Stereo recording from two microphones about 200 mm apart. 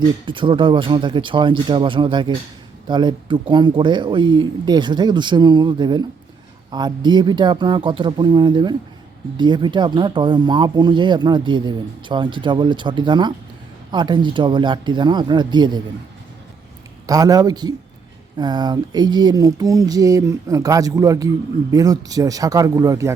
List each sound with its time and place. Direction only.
0.3 s speech: 25° right (ahead or behind)
17.1 s speech: 20° right (ahead or behind)